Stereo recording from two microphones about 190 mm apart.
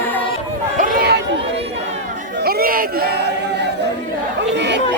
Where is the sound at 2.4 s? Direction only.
55° right (ahead or behind).